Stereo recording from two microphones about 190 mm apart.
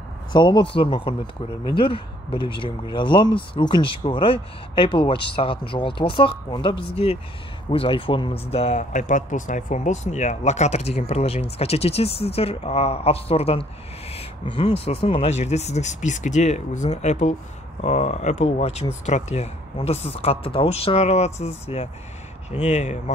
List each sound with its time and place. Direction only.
0.3 s speech: 25° left (ahead or behind)